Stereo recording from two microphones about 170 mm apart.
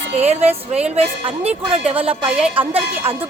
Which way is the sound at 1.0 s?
35° right (ahead or behind).